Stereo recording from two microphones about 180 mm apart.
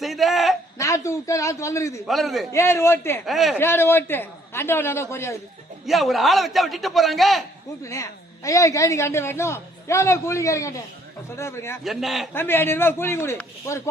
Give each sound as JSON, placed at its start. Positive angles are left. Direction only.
{"t": 0.0, "sound": "a sound", "side_deg": 0}
{"t": 0.8, "sound": "a man's voice", "side_deg": 15}
{"t": 2.0, "sound": "a man's voice", "side_deg": 0}
{"t": 2.5, "sound": "a woman's voice", "side_deg": 15}
{"t": 3.2, "sound": "a man's voice", "side_deg": 0}
{"t": 3.6, "sound": "a woman's voice", "side_deg": 15}
{"t": 5.8, "sound": "a man's voice", "side_deg": 0}
{"t": 7.9, "sound": "a woman's voice", "side_deg": 15}
{"t": 11.8, "sound": "a man's voice", "side_deg": 0}
{"t": 12.3, "sound": "a woman's voice", "side_deg": 10}